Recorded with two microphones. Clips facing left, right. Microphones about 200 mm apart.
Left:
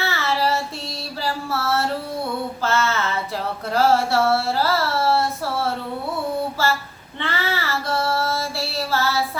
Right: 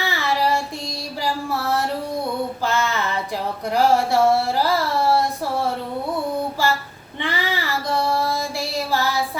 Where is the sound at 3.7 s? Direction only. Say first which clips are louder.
Even; 15° right (ahead or behind).